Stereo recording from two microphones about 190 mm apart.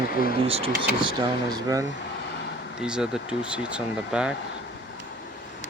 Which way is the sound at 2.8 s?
5° right (ahead or behind).